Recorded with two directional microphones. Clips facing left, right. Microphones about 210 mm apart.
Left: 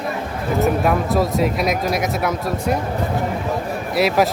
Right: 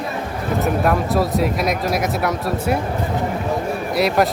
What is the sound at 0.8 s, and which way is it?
Speech, centre (ahead or behind).